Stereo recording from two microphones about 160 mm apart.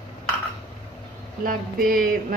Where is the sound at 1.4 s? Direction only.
65° right (ahead or behind).